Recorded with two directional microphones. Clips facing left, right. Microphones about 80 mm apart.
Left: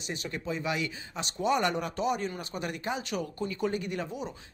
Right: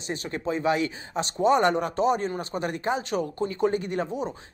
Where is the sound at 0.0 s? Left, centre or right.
Right.